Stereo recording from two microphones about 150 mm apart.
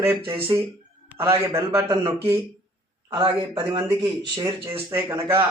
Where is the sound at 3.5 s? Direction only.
35° right (ahead or behind).